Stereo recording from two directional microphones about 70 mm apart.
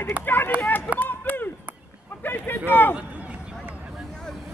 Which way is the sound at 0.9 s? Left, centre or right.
Left.